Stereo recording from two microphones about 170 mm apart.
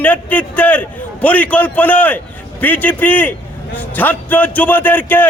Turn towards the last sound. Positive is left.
turn(degrees=10)  # may be behind; listen again after turning